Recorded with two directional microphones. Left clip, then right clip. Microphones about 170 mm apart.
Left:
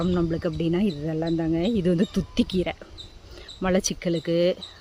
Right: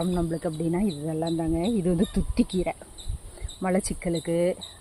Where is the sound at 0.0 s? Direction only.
30° left (ahead or behind).